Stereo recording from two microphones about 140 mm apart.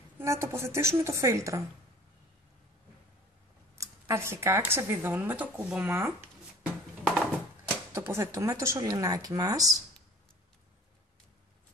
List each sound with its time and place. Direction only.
0.2 s speech: 20° right (ahead or behind)
3.7 s speech: 20° right (ahead or behind)
6.6 s a sound: 5° right (ahead or behind)
7.9 s speech: 20° right (ahead or behind)